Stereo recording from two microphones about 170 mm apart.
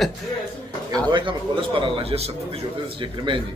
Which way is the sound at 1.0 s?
30° right (ahead or behind).